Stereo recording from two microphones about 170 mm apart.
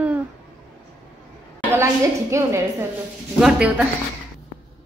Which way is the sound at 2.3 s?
15° right (ahead or behind).